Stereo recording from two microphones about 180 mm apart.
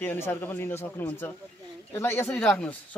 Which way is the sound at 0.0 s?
10° left (ahead or behind).